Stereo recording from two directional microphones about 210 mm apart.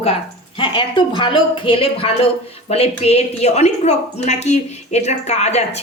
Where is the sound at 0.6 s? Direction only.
25° left (ahead or behind).